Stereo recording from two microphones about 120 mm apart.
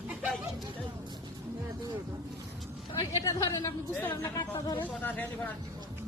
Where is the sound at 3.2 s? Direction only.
30° left (ahead or behind); by 5.5 s 15° left (ahead or behind).